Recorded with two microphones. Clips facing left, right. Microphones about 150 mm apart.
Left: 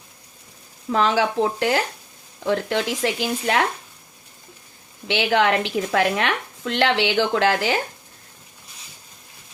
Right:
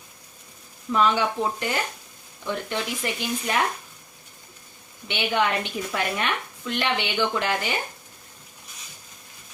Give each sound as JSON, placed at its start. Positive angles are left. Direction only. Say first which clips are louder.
{"t": 0.9, "sound": "a woman's voice", "louder": "left 2 dB", "side_deg": 90}
{"t": 5.0, "sound": "a woman's voice", "louder": "left 5 dB", "side_deg": 90}